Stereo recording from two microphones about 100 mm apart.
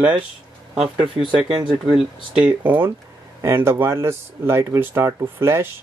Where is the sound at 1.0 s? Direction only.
55° right (ahead or behind).